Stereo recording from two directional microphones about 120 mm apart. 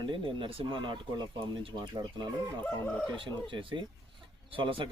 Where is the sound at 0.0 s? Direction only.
45° right (ahead or behind).